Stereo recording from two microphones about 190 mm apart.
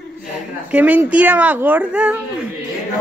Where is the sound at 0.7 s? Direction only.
10° right (ahead or behind).